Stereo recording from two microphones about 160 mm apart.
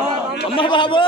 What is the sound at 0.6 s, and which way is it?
Speech, 30° left (ahead or behind).